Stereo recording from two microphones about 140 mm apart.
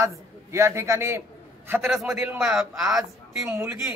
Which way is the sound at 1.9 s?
Centre (ahead or behind).